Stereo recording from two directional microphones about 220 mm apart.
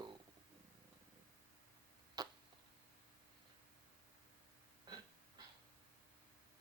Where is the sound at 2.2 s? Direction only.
15° right (ahead or behind).